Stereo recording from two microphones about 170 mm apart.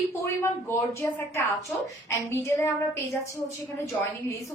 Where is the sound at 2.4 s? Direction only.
15° left (ahead or behind).